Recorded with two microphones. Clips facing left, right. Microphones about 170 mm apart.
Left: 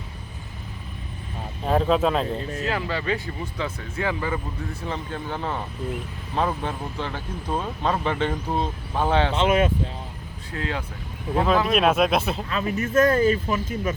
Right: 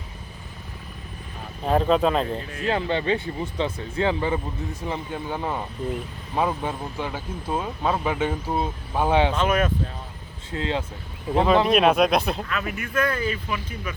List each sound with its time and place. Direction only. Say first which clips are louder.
1.6 s speech: right 1 dB; centre (ahead or behind)
2.6 s speech: right 4 dB; 30° right (ahead or behind); by 9.3 s 15° right (ahead or behind)
9.3 s speech: left 2 dB; 25° left (ahead or behind)
10.5 s speech: right 3 dB; 25° right (ahead or behind)
11.7 s speech: right 1 dB; centre (ahead or behind)
12.5 s speech: left 4 dB; 30° left (ahead or behind)